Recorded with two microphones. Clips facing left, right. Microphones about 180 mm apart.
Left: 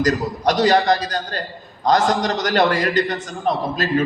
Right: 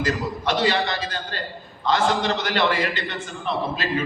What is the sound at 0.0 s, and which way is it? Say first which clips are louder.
A man's voice: left 6 dB; 40° left (ahead or behind).